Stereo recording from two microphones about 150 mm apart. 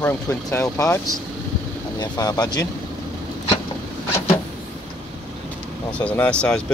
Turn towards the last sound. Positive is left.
turn(degrees=5)  # may be behind; listen again after turning